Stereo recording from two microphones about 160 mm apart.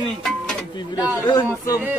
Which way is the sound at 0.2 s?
5° left (ahead or behind).